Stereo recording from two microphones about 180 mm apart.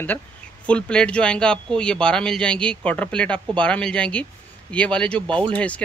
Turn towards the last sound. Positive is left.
turn(degrees=5)  # may be behind; listen again after turning